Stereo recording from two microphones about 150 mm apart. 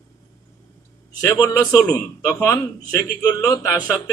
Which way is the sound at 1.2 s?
20° left (ahead or behind).